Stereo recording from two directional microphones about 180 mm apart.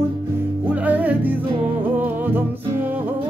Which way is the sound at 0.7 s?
10° right (ahead or behind).